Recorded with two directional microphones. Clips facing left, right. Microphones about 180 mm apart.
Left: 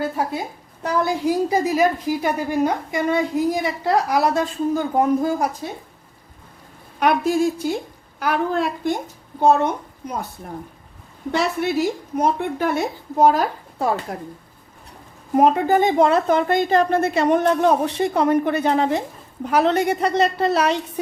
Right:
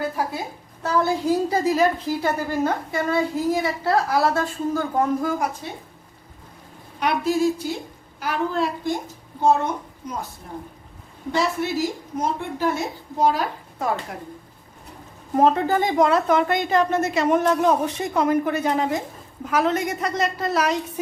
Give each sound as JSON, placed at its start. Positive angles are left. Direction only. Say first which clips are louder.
{"t": 0.0, "sound": "a woman's voice", "louder": "left 2 dB", "side_deg": 20}
{"t": 7.0, "sound": "a woman's voice", "louder": "left 3 dB", "side_deg": 50}
{"t": 11.3, "sound": "a woman's voice", "louder": "left 2 dB", "side_deg": 60}
{"t": 13.7, "sound": "speech", "louder": "left 3 dB", "side_deg": 35}
{"t": 15.4, "sound": "a woman's voice", "louder": "left 3 dB", "side_deg": 15}